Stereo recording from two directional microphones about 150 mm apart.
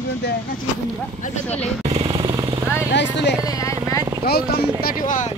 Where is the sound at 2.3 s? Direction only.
25° right (ahead or behind).